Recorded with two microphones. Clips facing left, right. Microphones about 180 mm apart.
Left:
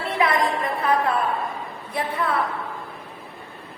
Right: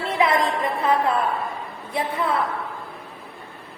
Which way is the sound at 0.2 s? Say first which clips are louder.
Right 1 dB; 25° right (ahead or behind).